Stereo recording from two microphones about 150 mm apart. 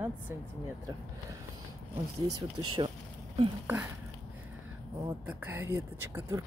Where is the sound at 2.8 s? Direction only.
35° right (ahead or behind).